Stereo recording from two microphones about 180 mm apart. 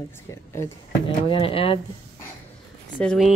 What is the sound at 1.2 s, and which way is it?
Speech, 30° left (ahead or behind).